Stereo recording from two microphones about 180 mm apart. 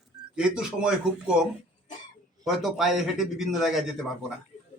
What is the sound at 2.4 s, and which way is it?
A man's voice, centre (ahead or behind).